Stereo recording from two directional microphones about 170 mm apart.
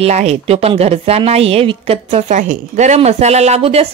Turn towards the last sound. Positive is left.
turn(degrees=-35)  # may be behind; listen again after turning